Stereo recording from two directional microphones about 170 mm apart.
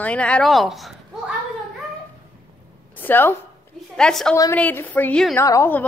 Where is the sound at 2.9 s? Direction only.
10° left (ahead or behind).